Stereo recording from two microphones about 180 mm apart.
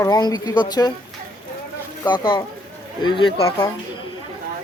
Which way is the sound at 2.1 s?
25° left (ahead or behind).